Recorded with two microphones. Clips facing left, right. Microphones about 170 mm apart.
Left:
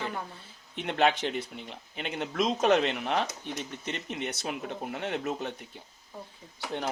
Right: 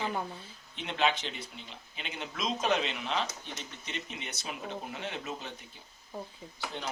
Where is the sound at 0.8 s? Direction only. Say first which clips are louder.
Left 5 dB; 60° left (ahead or behind).